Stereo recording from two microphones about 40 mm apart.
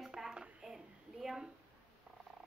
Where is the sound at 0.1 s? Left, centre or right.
Centre.